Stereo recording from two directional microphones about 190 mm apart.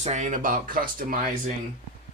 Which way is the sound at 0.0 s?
40° right (ahead or behind).